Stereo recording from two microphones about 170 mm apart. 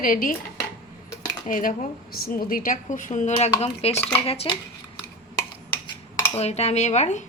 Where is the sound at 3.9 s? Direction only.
10° left (ahead or behind).